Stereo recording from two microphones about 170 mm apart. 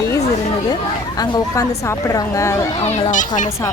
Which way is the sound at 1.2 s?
20° left (ahead or behind).